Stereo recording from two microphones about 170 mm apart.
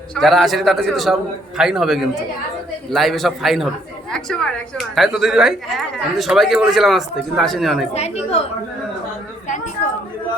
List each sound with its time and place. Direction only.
0.1 s a woman's voice: centre (ahead or behind)
7.9 s a woman's voice: 40° left (ahead or behind)